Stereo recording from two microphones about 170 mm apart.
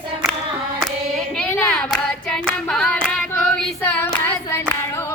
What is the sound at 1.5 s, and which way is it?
Hands, 5° left (ahead or behind).